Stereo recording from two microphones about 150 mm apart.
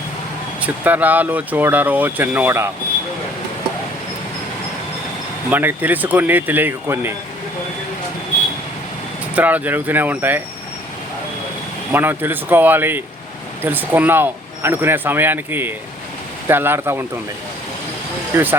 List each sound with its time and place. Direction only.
0.6 s speech: 10° right (ahead or behind)
5.5 s speech: 10° right (ahead or behind)
9.3 s speech: 10° right (ahead or behind)
11.9 s speech: 15° right (ahead or behind)